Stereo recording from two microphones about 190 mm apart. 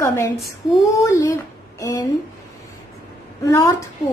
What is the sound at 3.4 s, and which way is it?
Speech, 15° left (ahead or behind).